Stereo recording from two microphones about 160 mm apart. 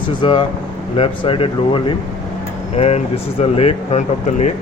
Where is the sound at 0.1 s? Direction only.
30° left (ahead or behind).